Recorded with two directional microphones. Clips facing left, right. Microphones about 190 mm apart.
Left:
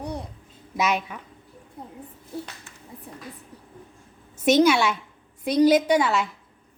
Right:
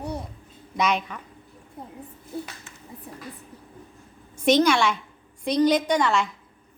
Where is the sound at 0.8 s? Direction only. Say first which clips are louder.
Even; 5° left (ahead or behind).